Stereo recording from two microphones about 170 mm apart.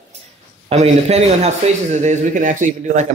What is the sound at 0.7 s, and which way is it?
A man's voice, 40° right (ahead or behind).